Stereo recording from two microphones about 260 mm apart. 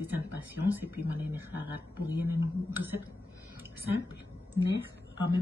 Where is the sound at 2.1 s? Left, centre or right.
Centre.